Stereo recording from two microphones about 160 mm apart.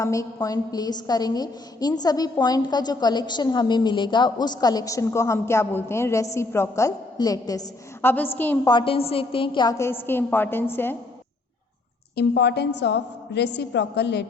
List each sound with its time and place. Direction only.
0.0 s a woman's voice: 20° left (ahead or behind)
8.1 s a woman's voice: 10° left (ahead or behind)
8.7 s a woman's voice: 35° left (ahead or behind)
9.7 s a woman's voice: 15° left (ahead or behind)
12.1 s a woman's voice: 90° left